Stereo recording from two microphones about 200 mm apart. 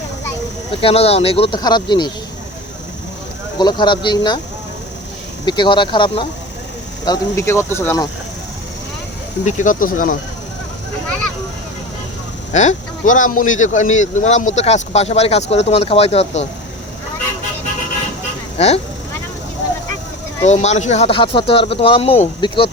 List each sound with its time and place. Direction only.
0.7 s speech: 30° left (ahead or behind)
3.6 s speech: 20° left (ahead or behind)
5.5 s speech: 25° left (ahead or behind)
9.4 s speech: 35° left (ahead or behind)
12.5 s speech: 40° left (ahead or behind)
18.5 s speech: 30° left (ahead or behind)
20.4 s speech: 35° left (ahead or behind)